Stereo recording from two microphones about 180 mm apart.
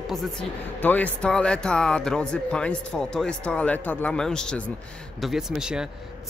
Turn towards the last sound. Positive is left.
turn(degrees=-5)  # may be behind; listen again after turning